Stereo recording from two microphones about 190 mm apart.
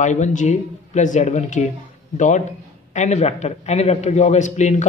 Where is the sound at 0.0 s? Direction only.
40° left (ahead or behind).